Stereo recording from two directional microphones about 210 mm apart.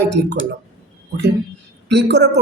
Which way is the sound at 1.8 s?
55° right (ahead or behind).